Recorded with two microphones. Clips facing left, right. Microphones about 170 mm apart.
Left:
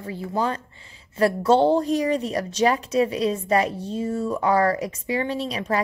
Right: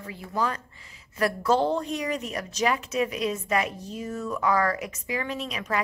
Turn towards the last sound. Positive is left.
turn(degrees=30)  # may be behind; listen again after turning